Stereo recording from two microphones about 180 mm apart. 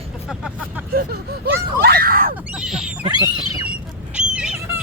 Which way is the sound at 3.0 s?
25° right (ahead or behind).